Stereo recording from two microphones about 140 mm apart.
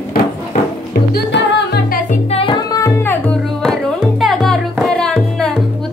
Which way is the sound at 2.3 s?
40° left (ahead or behind).